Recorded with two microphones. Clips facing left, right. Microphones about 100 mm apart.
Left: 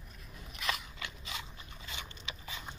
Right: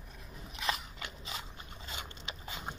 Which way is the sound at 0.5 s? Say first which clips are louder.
Right 2 dB; 35° right (ahead or behind).